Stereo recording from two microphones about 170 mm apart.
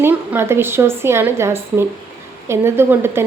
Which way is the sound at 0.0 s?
10° right (ahead or behind).